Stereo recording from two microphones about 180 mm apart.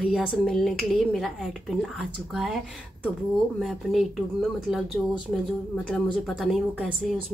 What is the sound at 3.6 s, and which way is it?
Speech, centre (ahead or behind).